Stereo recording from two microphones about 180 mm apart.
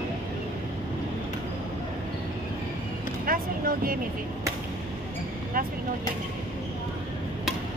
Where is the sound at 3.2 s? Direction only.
50° right (ahead or behind).